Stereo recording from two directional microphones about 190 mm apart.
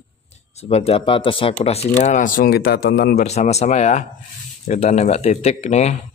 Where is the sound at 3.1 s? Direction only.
35° left (ahead or behind).